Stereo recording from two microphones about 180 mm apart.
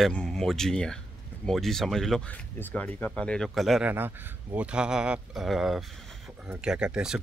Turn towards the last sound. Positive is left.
turn(degrees=-5)  # may be behind; listen again after turning